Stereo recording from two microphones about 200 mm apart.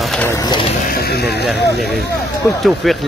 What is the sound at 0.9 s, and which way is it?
Speech, 50° left (ahead or behind).